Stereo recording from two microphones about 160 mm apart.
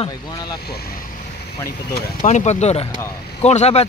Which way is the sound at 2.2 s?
50° left (ahead or behind).